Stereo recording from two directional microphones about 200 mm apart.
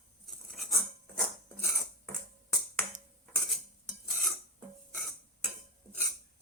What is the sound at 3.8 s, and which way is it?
Stir, centre (ahead or behind).